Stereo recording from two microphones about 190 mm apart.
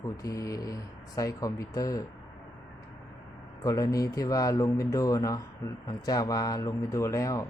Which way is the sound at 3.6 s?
15° left (ahead or behind).